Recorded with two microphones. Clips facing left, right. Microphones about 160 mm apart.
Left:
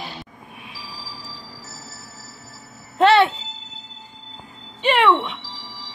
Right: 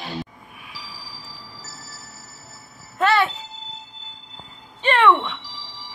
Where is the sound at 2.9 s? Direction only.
25° left (ahead or behind).